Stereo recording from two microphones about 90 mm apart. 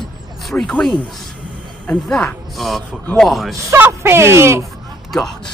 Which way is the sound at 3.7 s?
25° right (ahead or behind).